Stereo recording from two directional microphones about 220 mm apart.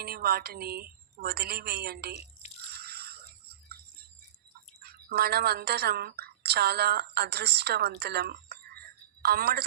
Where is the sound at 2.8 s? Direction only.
45° right (ahead or behind).